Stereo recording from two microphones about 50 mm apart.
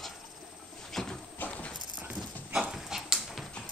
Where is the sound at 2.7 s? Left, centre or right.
Centre.